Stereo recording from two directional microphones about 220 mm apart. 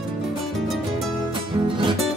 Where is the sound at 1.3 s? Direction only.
20° right (ahead or behind).